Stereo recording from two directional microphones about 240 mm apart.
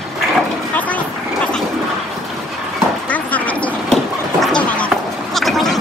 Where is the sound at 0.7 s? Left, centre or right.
Centre.